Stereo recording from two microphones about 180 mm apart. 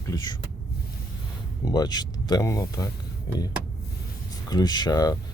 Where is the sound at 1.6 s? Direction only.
20° left (ahead or behind).